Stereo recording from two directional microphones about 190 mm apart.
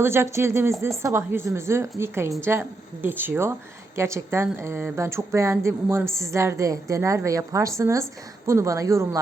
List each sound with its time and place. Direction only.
0.0 s speech: 15° right (ahead or behind)